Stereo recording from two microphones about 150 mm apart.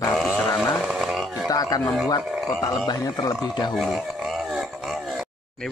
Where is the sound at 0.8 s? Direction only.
5° right (ahead or behind).